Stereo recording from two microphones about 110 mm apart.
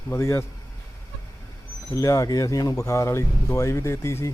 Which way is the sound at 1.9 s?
30° left (ahead or behind).